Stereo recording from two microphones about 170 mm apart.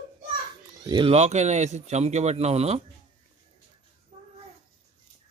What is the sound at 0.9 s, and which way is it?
Speech, 30° right (ahead or behind).